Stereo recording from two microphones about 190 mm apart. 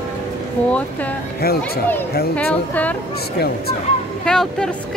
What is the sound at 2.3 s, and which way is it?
Speech, 5° left (ahead or behind).